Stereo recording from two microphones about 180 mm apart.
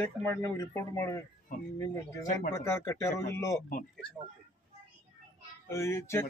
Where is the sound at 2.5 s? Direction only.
15° left (ahead or behind).